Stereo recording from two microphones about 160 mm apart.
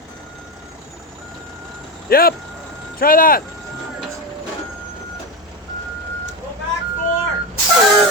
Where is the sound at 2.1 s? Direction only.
70° left (ahead or behind).